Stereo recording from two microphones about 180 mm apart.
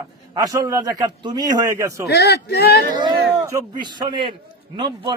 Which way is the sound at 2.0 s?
65° left (ahead or behind).